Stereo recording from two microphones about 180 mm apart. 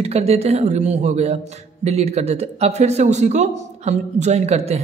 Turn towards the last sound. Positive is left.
turn(degrees=-35)  # may be behind; listen again after turning